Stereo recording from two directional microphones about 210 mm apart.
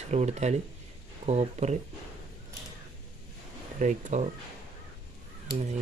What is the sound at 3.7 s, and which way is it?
Speech, 35° right (ahead or behind).